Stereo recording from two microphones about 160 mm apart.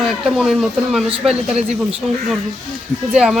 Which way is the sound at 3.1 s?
5° right (ahead or behind).